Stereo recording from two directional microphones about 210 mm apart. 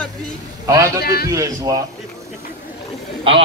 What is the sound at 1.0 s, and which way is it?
Speech, 50° left (ahead or behind).